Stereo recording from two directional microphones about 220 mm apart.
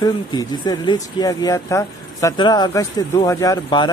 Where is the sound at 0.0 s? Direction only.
20° left (ahead or behind).